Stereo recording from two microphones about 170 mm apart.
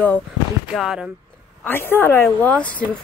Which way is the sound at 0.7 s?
5° right (ahead or behind).